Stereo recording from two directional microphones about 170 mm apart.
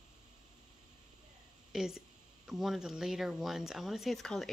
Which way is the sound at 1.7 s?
5° right (ahead or behind).